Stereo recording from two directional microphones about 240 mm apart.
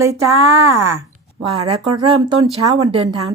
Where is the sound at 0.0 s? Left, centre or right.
Centre.